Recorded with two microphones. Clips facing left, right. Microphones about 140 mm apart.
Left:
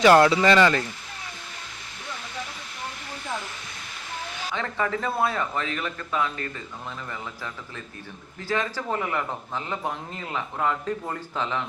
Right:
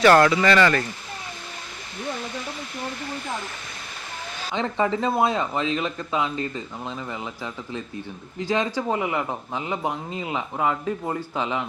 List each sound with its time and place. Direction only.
0.0 s speech: 20° left (ahead or behind)
4.5 s a man's voice: 20° right (ahead or behind)